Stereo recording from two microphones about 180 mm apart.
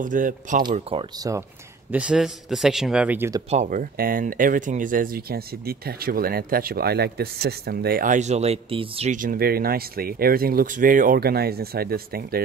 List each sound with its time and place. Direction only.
0.0 s speech: 45° right (ahead or behind)
0.7 s speech: 30° right (ahead or behind)
1.3 s speech: 20° right (ahead or behind)
1.9 s a man's voice: 5° right (ahead or behind)
3.4 s speech: 40° right (ahead or behind)
3.9 s speech: 50° right (ahead or behind); by 9.1 s 30° right (ahead or behind)
9.1 s speech: 50° right (ahead or behind)